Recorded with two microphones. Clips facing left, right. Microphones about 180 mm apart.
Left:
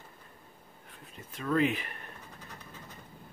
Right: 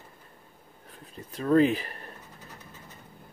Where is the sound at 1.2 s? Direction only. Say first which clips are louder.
Right 7 dB; 35° right (ahead or behind).